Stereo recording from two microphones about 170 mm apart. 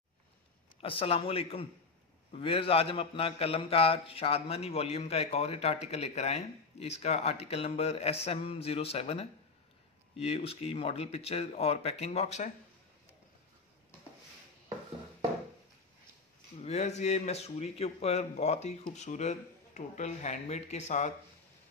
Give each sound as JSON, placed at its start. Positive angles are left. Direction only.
{"t": 0.7, "sound": "a man's voice", "side_deg": 35}
{"t": 16.6, "sound": "a man's voice", "side_deg": 40}